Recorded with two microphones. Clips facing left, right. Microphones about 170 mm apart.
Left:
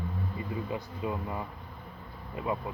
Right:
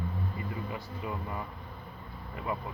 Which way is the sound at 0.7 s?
20° left (ahead or behind).